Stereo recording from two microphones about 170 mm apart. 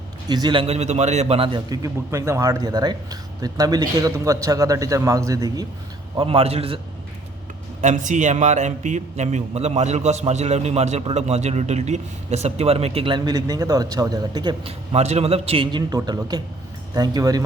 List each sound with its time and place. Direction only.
0.3 s a man's voice: 25° right (ahead or behind)
6.1 s a man's voice: 35° right (ahead or behind)
7.8 s a man's voice: 45° right (ahead or behind); by 14.7 s 25° right (ahead or behind)
14.9 s a man's voice: 40° right (ahead or behind); by 17.4 s 25° right (ahead or behind)